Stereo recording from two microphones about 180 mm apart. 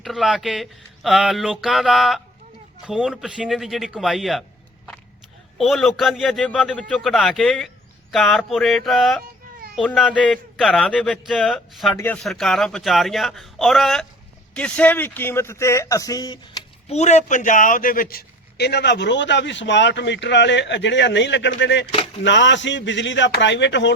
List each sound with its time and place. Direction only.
0.0 s speech: centre (ahead or behind)
5.5 s speech: centre (ahead or behind); by 16.6 s 20° left (ahead or behind)
16.9 s a man's voice: 40° left (ahead or behind); by 23.9 s 80° left